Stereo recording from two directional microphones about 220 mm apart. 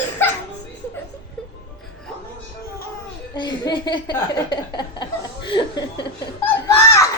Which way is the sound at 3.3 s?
20° left (ahead or behind).